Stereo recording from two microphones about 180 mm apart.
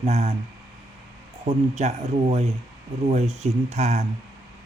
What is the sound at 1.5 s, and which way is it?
A man's voice, 40° right (ahead or behind).